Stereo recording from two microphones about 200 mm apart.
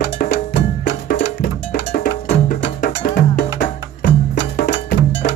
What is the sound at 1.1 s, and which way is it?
Music, 55° left (ahead or behind).